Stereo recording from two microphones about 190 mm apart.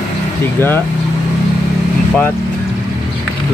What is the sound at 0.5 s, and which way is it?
Speech, 10° left (ahead or behind).